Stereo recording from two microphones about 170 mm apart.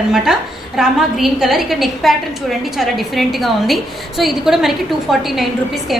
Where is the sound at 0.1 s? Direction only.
5° right (ahead or behind).